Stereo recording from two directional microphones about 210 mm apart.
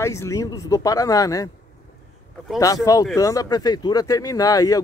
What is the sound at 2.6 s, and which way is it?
Speech, 15° left (ahead or behind).